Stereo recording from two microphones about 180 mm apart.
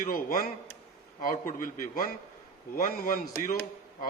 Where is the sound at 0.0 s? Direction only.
50° left (ahead or behind).